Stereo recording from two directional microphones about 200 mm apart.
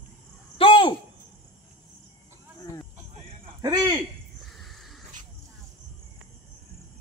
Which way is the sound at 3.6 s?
20° right (ahead or behind).